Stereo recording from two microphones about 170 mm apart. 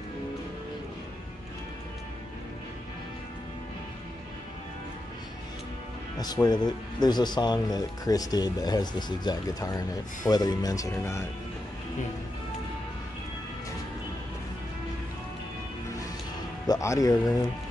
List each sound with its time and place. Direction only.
6.1 s speech: 25° left (ahead or behind)
16.6 s speech: 20° left (ahead or behind)